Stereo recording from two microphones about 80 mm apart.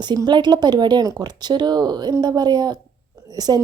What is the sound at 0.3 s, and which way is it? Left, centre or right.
Speech, right.